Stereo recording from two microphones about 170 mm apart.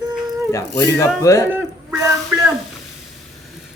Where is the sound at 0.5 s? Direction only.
15° left (ahead or behind).